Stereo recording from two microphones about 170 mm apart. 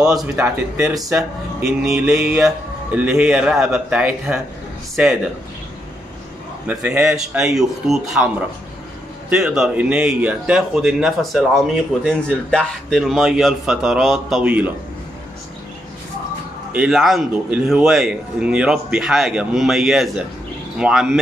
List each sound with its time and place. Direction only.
0.0 s speech: 5° right (ahead or behind)
6.7 s speech: 5° right (ahead or behind)
9.3 s speech: 5° right (ahead or behind)
16.7 s speech: 5° right (ahead or behind)